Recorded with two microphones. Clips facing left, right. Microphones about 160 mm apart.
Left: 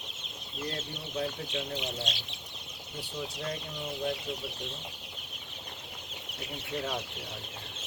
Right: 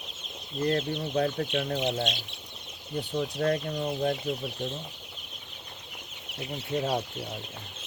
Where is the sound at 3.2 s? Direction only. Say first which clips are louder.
Right 10 dB; 60° right (ahead or behind).